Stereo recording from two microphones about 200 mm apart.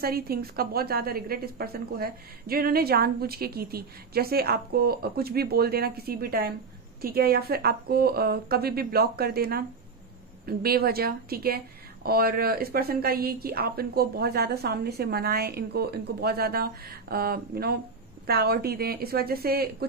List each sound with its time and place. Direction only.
0.0 s speech: 50° right (ahead or behind)